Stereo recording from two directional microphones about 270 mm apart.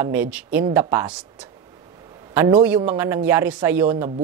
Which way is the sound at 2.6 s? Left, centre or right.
Centre.